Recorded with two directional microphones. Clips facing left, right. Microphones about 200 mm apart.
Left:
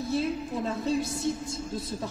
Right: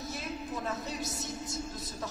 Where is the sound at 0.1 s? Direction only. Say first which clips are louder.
Left 11 dB; 30° left (ahead or behind).